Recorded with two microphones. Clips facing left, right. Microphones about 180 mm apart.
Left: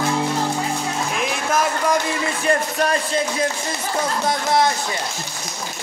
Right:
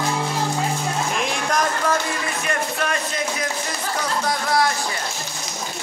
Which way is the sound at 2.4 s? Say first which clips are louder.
Left 6 dB; 30° left (ahead or behind).